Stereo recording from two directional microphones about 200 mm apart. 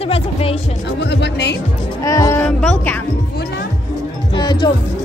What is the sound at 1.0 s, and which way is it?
Speech, 60° left (ahead or behind).